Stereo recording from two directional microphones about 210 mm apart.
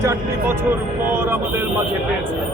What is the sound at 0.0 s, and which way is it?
Speech, 15° right (ahead or behind).